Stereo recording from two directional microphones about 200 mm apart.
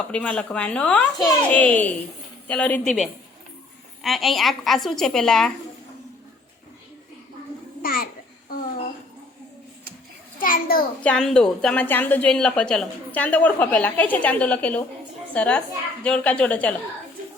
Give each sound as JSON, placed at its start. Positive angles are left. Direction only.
{"t": 0.1, "sound": "a woman's voice", "side_deg": 5}
{"t": 7.8, "sound": "babbling", "side_deg": 45}
{"t": 10.4, "sound": "a sound", "side_deg": 45}
{"t": 11.0, "sound": "a woman's voice", "side_deg": 5}